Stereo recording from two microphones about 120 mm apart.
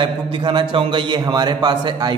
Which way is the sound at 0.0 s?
40° right (ahead or behind).